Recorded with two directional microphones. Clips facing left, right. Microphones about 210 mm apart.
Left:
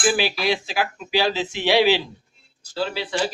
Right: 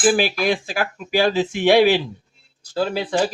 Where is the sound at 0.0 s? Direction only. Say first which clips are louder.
Right 4 dB; 50° right (ahead or behind).